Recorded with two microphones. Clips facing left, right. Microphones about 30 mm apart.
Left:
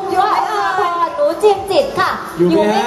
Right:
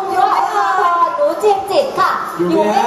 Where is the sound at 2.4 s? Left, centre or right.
Centre.